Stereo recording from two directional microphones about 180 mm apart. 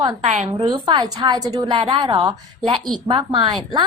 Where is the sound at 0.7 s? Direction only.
20° right (ahead or behind).